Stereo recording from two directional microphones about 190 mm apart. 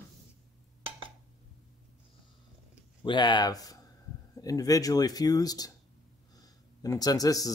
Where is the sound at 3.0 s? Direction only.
25° left (ahead or behind).